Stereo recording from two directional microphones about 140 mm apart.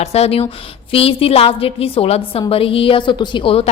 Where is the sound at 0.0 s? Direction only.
50° left (ahead or behind).